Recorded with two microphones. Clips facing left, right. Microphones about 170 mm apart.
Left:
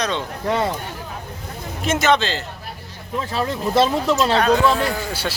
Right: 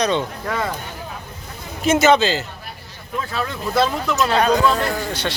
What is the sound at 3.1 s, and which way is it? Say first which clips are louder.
Speech: left 2 dB; 25° left (ahead or behind).